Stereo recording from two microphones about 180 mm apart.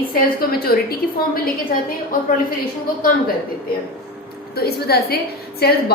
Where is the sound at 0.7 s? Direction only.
55° left (ahead or behind).